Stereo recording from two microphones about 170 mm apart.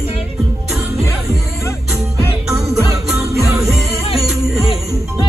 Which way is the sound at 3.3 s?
Centre (ahead or behind).